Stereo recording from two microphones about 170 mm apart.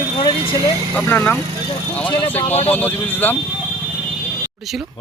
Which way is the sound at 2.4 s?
40° left (ahead or behind).